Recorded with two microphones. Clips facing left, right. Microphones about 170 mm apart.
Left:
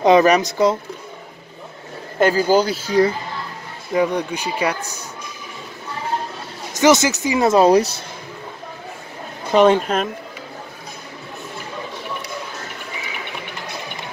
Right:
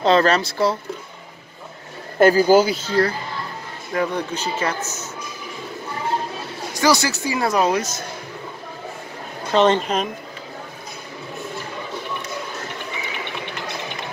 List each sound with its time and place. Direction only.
0.0 s speech: 15° left (ahead or behind)
2.1 s speech: 10° right (ahead or behind)
2.7 s speech: 10° left (ahead or behind)
6.7 s speech: 20° left (ahead or behind)
9.5 s speech: 10° left (ahead or behind)